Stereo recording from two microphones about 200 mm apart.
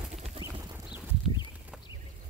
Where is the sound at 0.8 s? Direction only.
5° right (ahead or behind).